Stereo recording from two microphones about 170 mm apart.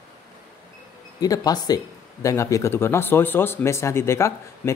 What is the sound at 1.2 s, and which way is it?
Speech, 20° left (ahead or behind).